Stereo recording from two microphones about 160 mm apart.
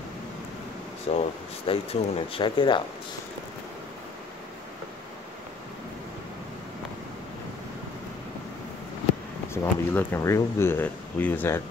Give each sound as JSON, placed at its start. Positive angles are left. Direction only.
{"t": 1.1, "sound": "speech", "side_deg": 40}
{"t": 9.5, "sound": "speech", "side_deg": 15}